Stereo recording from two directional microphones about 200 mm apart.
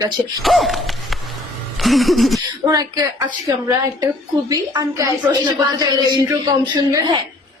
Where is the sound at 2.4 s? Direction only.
20° right (ahead or behind).